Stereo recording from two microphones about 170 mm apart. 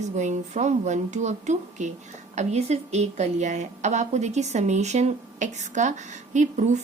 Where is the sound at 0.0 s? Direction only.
45° right (ahead or behind).